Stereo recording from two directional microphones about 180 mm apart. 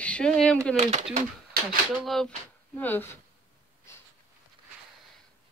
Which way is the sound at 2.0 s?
Centre (ahead or behind).